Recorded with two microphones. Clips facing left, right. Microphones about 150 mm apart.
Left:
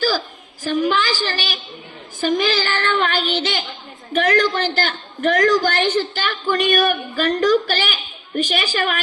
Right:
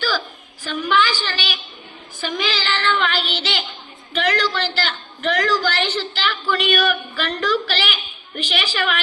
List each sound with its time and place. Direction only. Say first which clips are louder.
0.6 s a woman's voice: left 1 dB; 40° left (ahead or behind)